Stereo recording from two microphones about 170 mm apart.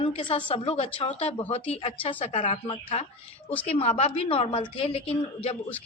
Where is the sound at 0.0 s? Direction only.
30° left (ahead or behind).